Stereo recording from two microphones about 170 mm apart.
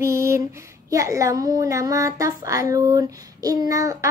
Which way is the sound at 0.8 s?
20° right (ahead or behind).